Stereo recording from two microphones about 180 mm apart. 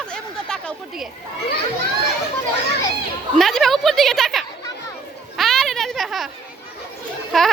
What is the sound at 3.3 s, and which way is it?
Speech, centre (ahead or behind).